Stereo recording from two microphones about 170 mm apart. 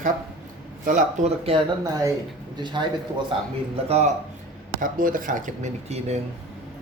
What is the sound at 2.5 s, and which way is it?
Speech, 25° right (ahead or behind).